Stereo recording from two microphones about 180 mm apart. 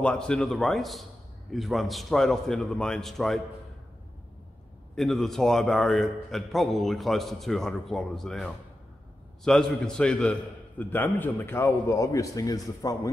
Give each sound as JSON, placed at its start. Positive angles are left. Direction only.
{"t": 0.0, "sound": "a man's voice", "side_deg": 5}
{"t": 4.9, "sound": "a man's voice", "side_deg": 0}